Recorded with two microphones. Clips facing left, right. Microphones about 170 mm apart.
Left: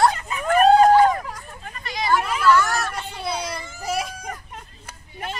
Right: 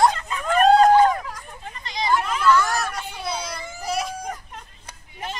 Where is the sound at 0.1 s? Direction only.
10° left (ahead or behind).